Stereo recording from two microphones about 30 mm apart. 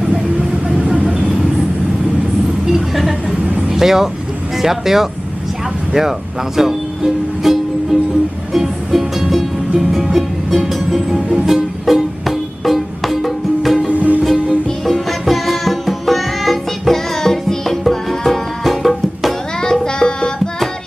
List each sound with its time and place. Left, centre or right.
2.7 s vehicle: centre
3.4 s vehicle: right
3.7 s speech: centre
5.9 s music: centre
11.2 s speech: centre
11.8 s music: centre
13.9 s music: right
14.9 s music: centre
19.6 s music: centre